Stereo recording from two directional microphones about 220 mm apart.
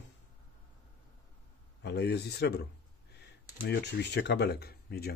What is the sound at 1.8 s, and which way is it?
A man's voice, 50° left (ahead or behind).